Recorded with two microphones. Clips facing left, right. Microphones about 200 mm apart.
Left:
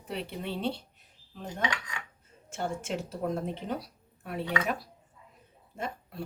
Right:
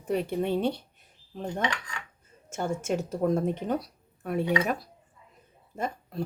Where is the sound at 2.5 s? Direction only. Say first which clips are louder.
Right 4 dB; 45° right (ahead or behind).